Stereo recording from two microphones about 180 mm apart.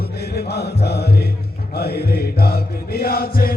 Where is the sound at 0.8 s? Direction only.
65° left (ahead or behind).